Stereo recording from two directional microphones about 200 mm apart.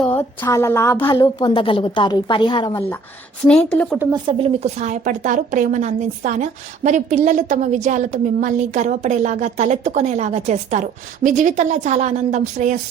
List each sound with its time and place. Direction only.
0.0 s a woman's voice: 10° left (ahead or behind)
1.0 s a woman's voice: 20° left (ahead or behind)
3.4 s a woman's voice: 5° left (ahead or behind)
3.9 s speech: 10° right (ahead or behind)
4.3 s a woman's voice: 30° right (ahead or behind)